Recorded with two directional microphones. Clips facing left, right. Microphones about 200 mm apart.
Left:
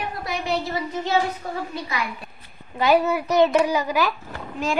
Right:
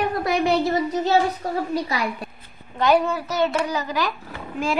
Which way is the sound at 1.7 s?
35° right (ahead or behind).